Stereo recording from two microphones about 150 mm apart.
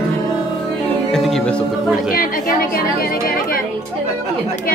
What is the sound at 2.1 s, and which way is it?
A woman's voice, 70° left (ahead or behind).